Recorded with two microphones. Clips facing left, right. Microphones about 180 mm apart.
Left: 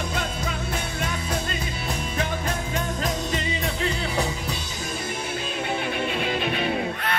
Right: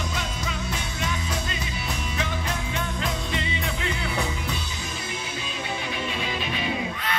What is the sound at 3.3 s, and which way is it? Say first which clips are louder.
Music: left 2 dB; 40° left (ahead or behind).